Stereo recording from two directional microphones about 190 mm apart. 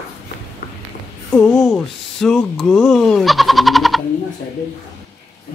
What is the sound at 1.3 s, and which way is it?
Speech, centre (ahead or behind).